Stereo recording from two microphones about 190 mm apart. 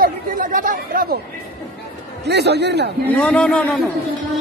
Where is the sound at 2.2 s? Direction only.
60° right (ahead or behind).